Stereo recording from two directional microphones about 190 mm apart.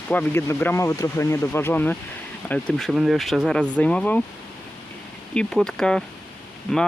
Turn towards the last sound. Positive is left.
turn(degrees=0)  # may be behind; listen again after turning